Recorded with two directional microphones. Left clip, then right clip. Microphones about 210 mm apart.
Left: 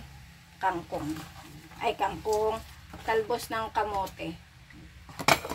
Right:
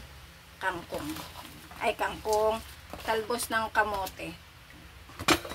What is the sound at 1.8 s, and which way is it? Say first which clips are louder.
Speech: even; 5° right (ahead or behind).